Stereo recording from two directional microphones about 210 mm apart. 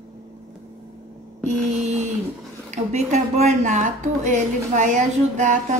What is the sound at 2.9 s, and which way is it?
A woman's voice, 35° right (ahead or behind).